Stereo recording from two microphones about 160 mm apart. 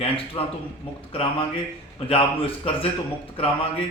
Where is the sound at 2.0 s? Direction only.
35° left (ahead or behind).